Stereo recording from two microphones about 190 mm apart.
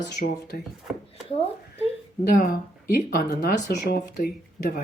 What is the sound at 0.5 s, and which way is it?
Speech, 55° left (ahead or behind).